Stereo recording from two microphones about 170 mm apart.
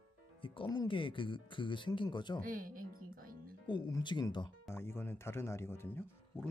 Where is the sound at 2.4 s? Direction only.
55° right (ahead or behind).